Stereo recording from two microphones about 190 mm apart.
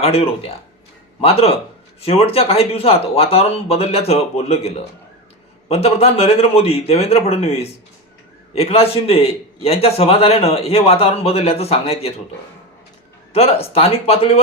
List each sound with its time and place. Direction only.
0.0 s a man's voice: 30° left (ahead or behind)
13.3 s a man's voice: 30° left (ahead or behind)